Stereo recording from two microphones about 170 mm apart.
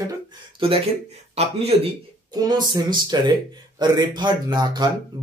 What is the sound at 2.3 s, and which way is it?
Speech, 25° right (ahead or behind).